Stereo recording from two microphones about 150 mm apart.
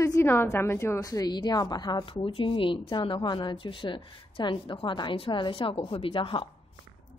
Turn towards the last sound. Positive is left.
turn(degrees=35)  # may be behind; listen again after turning